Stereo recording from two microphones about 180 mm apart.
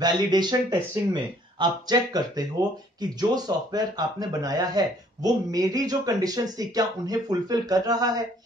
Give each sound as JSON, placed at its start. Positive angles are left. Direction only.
{"t": 0.0, "sound": "speech", "side_deg": -25}